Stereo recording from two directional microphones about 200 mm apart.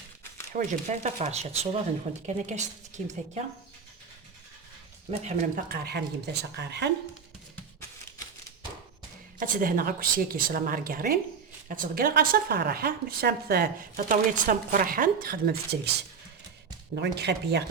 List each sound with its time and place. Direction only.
0.5 s speech: 35° right (ahead or behind)
5.2 s speech: 35° right (ahead or behind); by 6.9 s 60° right (ahead or behind)
9.4 s speech: 45° right (ahead or behind)
16.9 s speech: 55° right (ahead or behind)